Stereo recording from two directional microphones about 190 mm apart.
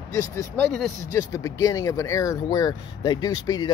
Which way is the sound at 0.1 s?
15° left (ahead or behind).